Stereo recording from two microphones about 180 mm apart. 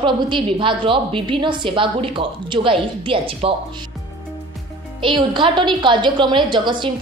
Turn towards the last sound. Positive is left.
turn(degrees=-25)  # may be behind; listen again after turning